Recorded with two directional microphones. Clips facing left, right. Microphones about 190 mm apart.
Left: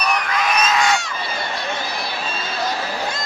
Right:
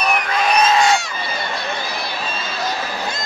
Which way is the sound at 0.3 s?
30° right (ahead or behind).